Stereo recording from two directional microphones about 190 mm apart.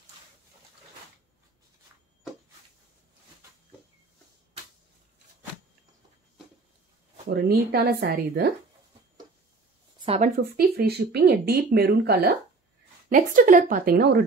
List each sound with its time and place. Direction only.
7.2 s a woman's voice: 55° right (ahead or behind)
9.9 s speech: 30° right (ahead or behind)
10.3 s speech: 55° right (ahead or behind)
13.1 s a woman's voice: 45° right (ahead or behind)